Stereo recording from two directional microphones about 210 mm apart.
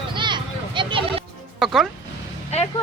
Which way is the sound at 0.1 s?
20° right (ahead or behind).